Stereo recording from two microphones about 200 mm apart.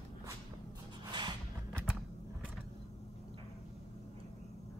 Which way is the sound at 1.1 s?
20° right (ahead or behind).